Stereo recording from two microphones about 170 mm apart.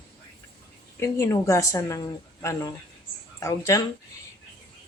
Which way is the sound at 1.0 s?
15° left (ahead or behind).